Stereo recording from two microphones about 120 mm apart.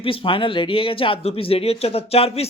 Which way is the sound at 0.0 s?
50° left (ahead or behind).